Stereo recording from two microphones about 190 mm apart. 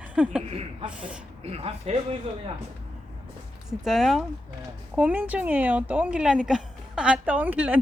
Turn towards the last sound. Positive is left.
turn(degrees=-5)  # may be behind; listen again after turning